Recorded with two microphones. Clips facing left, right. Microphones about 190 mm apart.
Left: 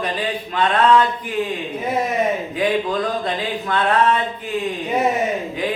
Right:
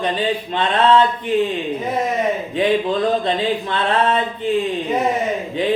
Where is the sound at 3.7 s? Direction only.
25° right (ahead or behind).